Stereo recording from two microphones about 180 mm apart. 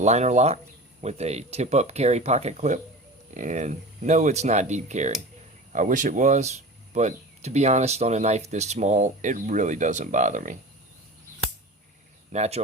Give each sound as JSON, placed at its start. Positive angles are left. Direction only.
{"t": 0.0, "sound": "speech", "side_deg": -40}
{"t": 12.3, "sound": "speech", "side_deg": -35}